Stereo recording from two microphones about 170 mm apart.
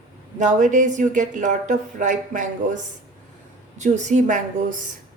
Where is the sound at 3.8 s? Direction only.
45° right (ahead or behind).